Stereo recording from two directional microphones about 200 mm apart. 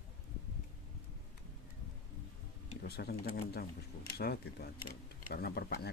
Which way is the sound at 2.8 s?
50° left (ahead or behind).